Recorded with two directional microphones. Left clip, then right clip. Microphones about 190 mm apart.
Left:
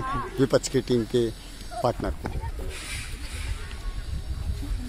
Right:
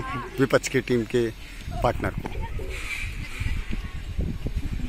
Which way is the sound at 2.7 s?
65° left (ahead or behind).